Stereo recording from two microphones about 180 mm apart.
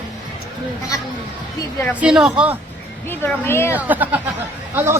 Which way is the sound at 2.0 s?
5° right (ahead or behind).